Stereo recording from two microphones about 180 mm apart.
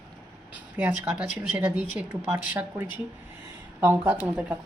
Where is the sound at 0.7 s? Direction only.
10° right (ahead or behind).